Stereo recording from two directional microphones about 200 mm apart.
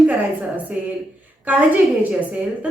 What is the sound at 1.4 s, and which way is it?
A woman's voice, 5° right (ahead or behind).